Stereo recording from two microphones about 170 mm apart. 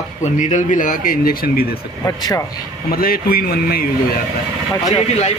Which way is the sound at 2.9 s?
60° left (ahead or behind).